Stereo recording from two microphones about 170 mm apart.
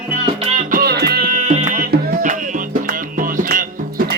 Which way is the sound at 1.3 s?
45° right (ahead or behind).